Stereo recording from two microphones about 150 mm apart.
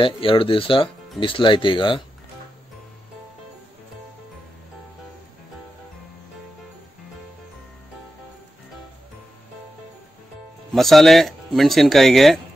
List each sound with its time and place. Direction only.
0.0 s speech: 35° left (ahead or behind)
10.7 s speech: centre (ahead or behind)